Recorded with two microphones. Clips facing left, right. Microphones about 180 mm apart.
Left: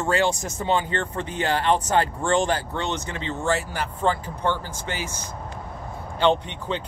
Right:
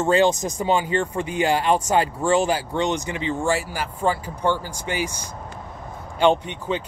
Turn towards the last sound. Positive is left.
turn(degrees=-10)  # may be behind; listen again after turning